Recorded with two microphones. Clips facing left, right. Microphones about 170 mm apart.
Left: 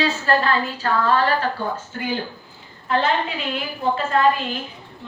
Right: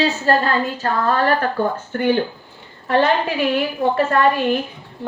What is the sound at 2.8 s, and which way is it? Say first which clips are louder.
A woman's voice: right 4 dB; 70° right (ahead or behind).